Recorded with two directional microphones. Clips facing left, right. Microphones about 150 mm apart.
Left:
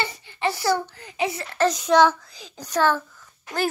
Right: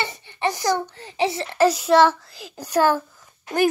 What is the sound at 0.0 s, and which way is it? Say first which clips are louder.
A child's voice: right 1 dB; 20° right (ahead or behind).